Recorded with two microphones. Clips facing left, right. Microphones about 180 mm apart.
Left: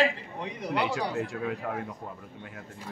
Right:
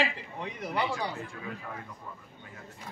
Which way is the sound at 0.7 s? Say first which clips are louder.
Left 3 dB; 75° left (ahead or behind).